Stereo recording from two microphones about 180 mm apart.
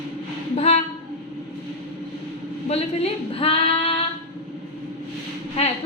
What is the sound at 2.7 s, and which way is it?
Speech, 35° left (ahead or behind).